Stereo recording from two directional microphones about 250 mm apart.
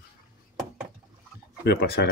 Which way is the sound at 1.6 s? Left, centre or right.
Left.